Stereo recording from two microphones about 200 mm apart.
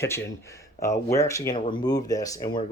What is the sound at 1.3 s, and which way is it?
Speech, 15° left (ahead or behind).